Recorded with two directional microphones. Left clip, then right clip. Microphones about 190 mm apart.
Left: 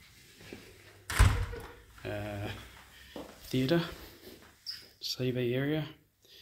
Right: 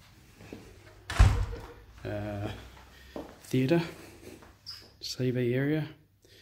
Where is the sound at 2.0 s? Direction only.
10° right (ahead or behind).